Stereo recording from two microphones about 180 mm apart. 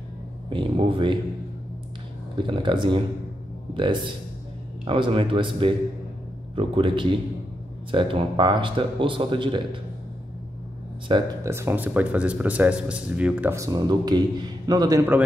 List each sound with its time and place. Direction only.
0.5 s speech: 30° right (ahead or behind)
2.3 s speech: 25° right (ahead or behind)
11.1 s speech: 25° right (ahead or behind)
11.5 s speech: 10° right (ahead or behind)